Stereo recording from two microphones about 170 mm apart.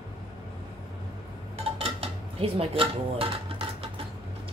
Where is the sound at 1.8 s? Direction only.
35° right (ahead or behind).